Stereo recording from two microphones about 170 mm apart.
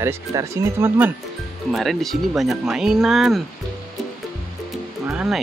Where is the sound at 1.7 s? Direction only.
Centre (ahead or behind).